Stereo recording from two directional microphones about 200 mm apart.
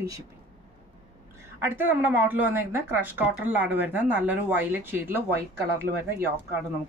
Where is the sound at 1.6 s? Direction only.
10° right (ahead or behind).